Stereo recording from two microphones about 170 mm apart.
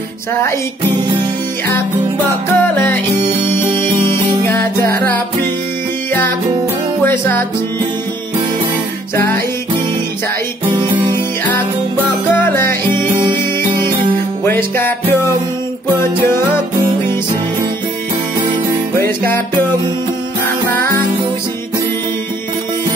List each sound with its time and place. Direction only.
2.5 s music: 15° left (ahead or behind)
4.8 s music: 10° left (ahead or behind)
7.0 s music: 15° left (ahead or behind)
10.6 s music: 25° right (ahead or behind)
12.3 s music: 15° left (ahead or behind)
14.4 s music: 10° left (ahead or behind)